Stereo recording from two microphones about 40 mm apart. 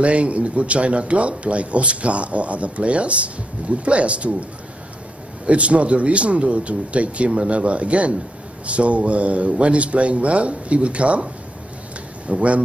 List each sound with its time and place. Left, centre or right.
0.0 s speech: right
5.5 s speech: right
12.3 s speech: right